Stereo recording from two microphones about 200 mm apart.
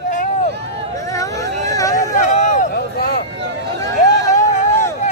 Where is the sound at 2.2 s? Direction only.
45° left (ahead or behind).